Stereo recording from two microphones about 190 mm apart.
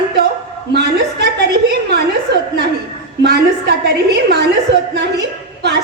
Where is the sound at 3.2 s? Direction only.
60° right (ahead or behind).